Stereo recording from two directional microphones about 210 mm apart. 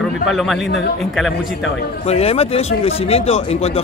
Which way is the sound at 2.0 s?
30° left (ahead or behind).